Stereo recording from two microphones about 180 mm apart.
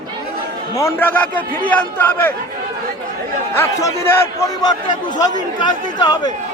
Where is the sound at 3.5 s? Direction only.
15° left (ahead or behind).